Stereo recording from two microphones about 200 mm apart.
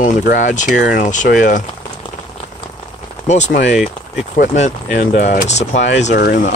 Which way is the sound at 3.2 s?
35° left (ahead or behind).